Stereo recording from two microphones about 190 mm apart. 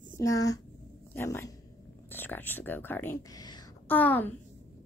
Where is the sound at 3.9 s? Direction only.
10° left (ahead or behind).